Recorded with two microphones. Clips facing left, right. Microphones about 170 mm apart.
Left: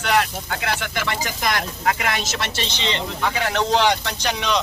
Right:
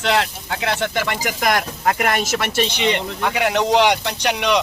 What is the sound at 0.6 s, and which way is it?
Speech, 25° right (ahead or behind).